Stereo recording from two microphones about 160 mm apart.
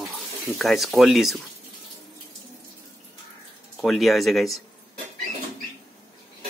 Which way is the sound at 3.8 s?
Centre (ahead or behind).